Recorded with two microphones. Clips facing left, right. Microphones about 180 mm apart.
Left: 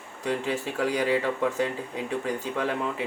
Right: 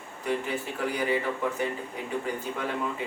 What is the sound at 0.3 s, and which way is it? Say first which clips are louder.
Speech: left 2 dB; 80° left.